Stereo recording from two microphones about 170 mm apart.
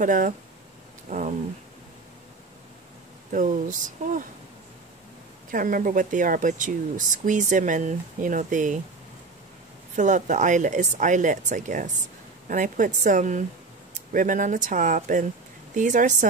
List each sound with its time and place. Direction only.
0.0 s speech: 50° right (ahead or behind)
3.3 s speech: 50° right (ahead or behind)
5.5 s speech: 55° right (ahead or behind)
9.9 s speech: 45° right (ahead or behind)